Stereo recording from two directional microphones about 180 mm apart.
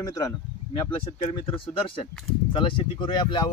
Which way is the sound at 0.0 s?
20° left (ahead or behind).